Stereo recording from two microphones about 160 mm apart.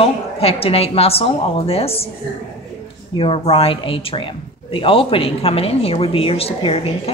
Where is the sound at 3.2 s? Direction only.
35° left (ahead or behind).